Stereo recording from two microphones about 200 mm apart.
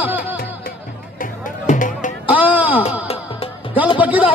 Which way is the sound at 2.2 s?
5° right (ahead or behind).